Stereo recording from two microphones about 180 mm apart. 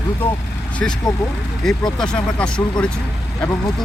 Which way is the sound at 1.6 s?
5° left (ahead or behind).